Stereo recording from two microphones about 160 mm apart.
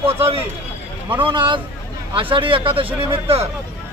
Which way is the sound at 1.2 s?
30° right (ahead or behind).